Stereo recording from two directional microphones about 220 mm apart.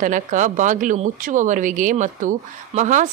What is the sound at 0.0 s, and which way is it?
Speech, 35° right (ahead or behind).